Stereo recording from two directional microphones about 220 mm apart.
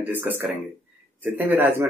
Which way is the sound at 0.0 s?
10° right (ahead or behind).